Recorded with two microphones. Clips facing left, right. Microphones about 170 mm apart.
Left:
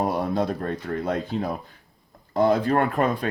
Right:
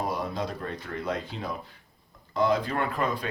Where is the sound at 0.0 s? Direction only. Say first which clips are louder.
Left 7 dB; 55° left (ahead or behind).